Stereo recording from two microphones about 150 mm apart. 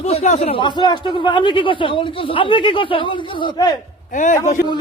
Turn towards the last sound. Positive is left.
turn(degrees=60)  # may be behind; listen again after turning